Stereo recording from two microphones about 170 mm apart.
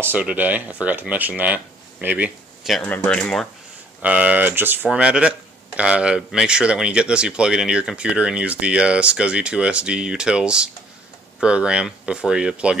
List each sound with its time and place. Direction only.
0.0 s speech: 10° right (ahead or behind)
2.8 s speech: 10° left (ahead or behind)
4.0 s speech: 10° right (ahead or behind)